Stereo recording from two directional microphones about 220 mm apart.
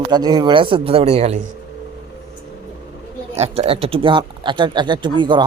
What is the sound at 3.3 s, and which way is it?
Speech, 30° right (ahead or behind).